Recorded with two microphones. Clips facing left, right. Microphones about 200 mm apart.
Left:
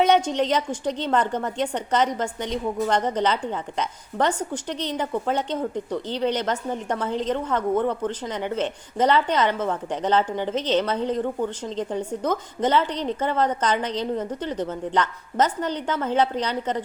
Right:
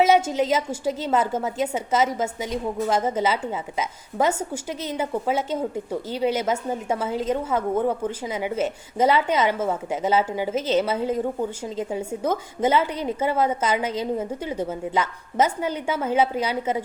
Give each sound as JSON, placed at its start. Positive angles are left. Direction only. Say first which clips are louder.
{"t": 0.0, "sound": "a woman's voice", "louder": "right 1 dB", "side_deg": -5}